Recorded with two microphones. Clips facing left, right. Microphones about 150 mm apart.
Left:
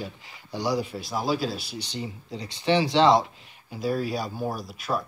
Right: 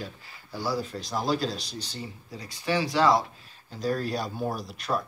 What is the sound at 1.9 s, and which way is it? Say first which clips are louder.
Speech: left 5 dB; 20° left (ahead or behind).